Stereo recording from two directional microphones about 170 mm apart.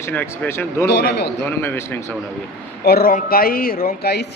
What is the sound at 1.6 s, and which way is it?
Speech, 15° left (ahead or behind).